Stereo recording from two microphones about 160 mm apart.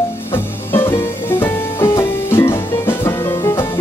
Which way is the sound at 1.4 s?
15° left (ahead or behind).